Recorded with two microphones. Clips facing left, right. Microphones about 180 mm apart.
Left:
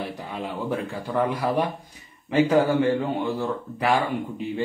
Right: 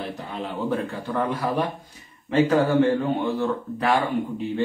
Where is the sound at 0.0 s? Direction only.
10° left (ahead or behind).